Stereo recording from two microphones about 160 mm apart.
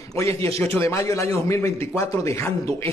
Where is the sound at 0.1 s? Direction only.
20° left (ahead or behind).